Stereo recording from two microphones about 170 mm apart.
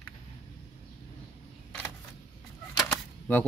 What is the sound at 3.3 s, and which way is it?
Speech, 10° left (ahead or behind).